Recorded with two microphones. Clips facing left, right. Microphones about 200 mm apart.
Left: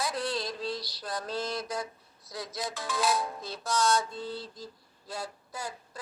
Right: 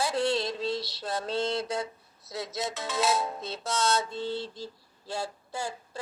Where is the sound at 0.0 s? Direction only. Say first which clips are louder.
Right 5 dB; 25° right (ahead or behind).